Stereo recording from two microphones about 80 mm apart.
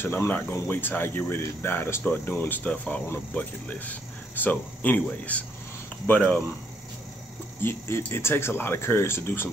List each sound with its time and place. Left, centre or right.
0.0 s speech: left
7.6 s speech: left